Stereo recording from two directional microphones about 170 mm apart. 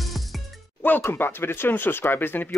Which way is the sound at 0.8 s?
10° left (ahead or behind).